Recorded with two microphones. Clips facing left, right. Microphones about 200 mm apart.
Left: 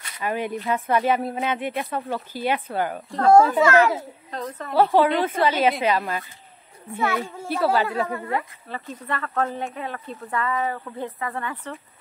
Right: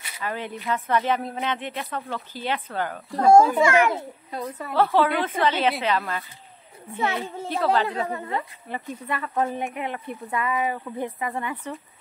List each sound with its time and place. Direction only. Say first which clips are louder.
0.2 s speech: left 5 dB; 15° left (ahead or behind)
3.1 s speech: even; 10° right (ahead or behind)
4.9 s speech: left 3 dB; 15° left (ahead or behind)
6.9 s a child's voice: left 2 dB; 20° right (ahead or behind)
7.4 s speech: left 1 dB; 15° left (ahead or behind)
8.1 s speech: left 2 dB; 20° right (ahead or behind)